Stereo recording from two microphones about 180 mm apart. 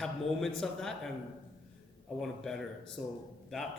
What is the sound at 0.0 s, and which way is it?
Speech, centre (ahead or behind).